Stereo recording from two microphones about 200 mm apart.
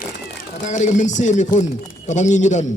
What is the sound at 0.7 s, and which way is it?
A man's voice, 35° left (ahead or behind).